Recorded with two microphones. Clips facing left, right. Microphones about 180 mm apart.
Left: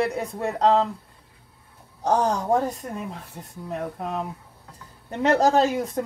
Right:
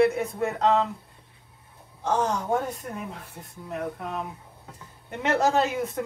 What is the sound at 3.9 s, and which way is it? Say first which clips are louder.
Speech: left 3 dB; 35° left (ahead or behind).